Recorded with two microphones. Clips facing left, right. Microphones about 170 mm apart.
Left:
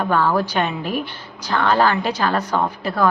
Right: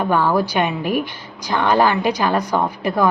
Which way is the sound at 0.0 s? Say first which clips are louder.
Right 1 dB; 15° right (ahead or behind).